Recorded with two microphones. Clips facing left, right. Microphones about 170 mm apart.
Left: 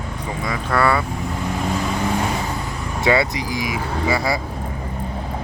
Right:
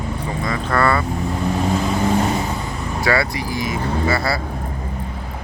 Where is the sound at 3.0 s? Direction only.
20° left (ahead or behind).